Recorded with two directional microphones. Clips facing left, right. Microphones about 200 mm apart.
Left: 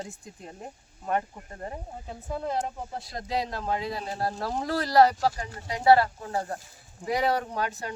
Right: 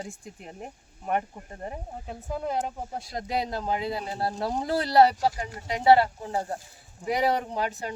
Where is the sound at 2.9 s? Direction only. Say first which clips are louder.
Right 1 dB; 25° right (ahead or behind).